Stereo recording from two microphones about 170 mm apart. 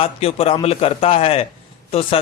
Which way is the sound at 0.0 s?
35° left (ahead or behind).